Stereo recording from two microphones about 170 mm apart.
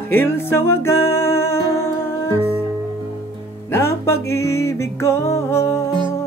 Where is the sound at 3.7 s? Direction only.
15° left (ahead or behind).